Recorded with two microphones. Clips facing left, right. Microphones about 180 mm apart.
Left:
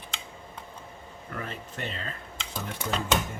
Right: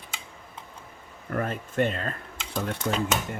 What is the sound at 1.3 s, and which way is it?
Speech, 50° right (ahead or behind).